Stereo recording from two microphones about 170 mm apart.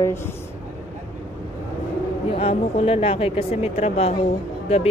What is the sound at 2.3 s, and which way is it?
Speech, 35° left (ahead or behind).